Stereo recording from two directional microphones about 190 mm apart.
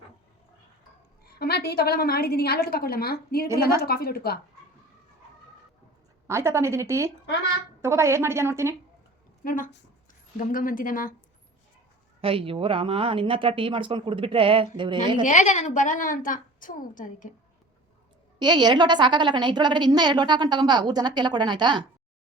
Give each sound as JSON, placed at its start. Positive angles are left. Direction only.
{"t": 1.2, "sound": "a woman's voice", "side_deg": 55}
{"t": 6.2, "sound": "a woman's voice", "side_deg": -15}
{"t": 9.4, "sound": "a woman's voice", "side_deg": 45}
{"t": 12.2, "sound": "a woman's voice", "side_deg": -30}
{"t": 15.2, "sound": "a woman's voice", "side_deg": 40}
{"t": 18.3, "sound": "a woman's voice", "side_deg": -25}